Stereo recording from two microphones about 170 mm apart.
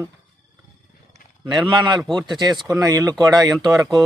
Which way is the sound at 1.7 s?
25° right (ahead or behind).